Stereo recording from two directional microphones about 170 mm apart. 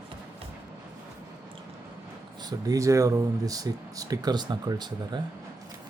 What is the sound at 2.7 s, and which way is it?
Speech, 20° right (ahead or behind).